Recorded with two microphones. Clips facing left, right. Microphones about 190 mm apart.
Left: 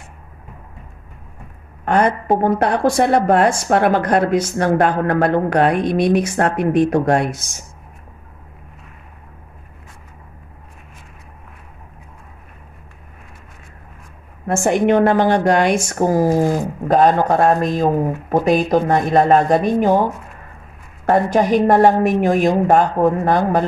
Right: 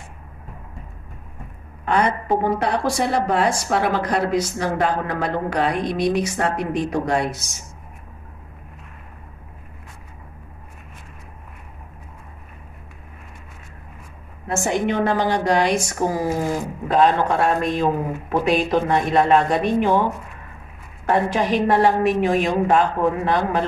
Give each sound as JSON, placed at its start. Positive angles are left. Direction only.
{"t": 1.9, "sound": "a woman's voice", "side_deg": 50}
{"t": 14.5, "sound": "a woman's voice", "side_deg": 55}
{"t": 21.0, "sound": "a woman's voice", "side_deg": 45}